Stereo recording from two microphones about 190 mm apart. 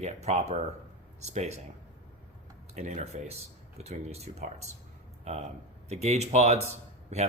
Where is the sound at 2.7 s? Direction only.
35° right (ahead or behind).